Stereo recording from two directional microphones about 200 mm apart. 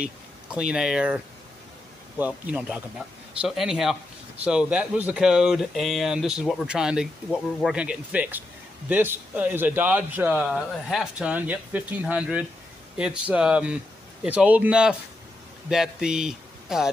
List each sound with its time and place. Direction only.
0.0 s speech: 5° right (ahead or behind)